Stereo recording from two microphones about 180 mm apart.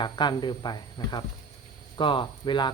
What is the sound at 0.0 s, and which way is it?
Speech, 25° left (ahead or behind).